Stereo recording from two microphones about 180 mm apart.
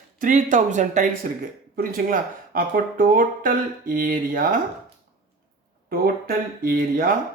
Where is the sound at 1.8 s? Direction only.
55° right (ahead or behind).